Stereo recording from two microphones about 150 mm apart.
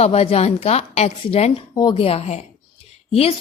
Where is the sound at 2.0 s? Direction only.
40° left (ahead or behind).